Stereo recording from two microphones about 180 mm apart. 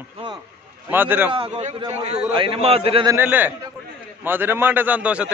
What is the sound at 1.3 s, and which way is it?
A man's voice, 30° right (ahead or behind).